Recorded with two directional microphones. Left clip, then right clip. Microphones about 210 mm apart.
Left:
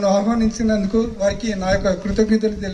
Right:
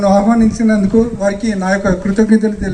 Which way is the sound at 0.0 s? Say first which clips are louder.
Right 6 dB; 35° left (ahead or behind).